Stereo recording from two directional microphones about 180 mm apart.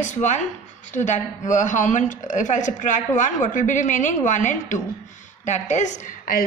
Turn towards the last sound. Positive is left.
turn(degrees=50)  # may be behind; listen again after turning